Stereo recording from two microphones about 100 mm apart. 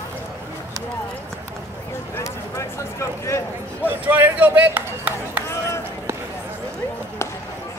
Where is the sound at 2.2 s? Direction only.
30° left (ahead or behind).